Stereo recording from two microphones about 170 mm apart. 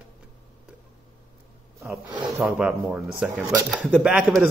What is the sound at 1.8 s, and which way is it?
Speech, 20° right (ahead or behind).